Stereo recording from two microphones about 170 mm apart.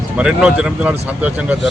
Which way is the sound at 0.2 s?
5° right (ahead or behind).